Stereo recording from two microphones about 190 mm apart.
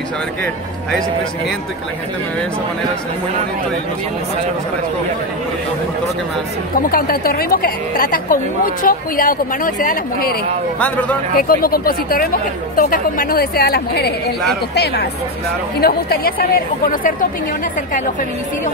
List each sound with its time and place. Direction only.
6.9 s a woman's voice: 50° left (ahead or behind)
10.8 s a man's voice: 10° left (ahead or behind)
11.3 s a woman's voice: 50° left (ahead or behind)
15.8 s a woman's voice: 55° left (ahead or behind)